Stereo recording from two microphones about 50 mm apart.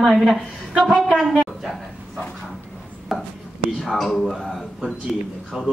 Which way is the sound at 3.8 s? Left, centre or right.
Centre.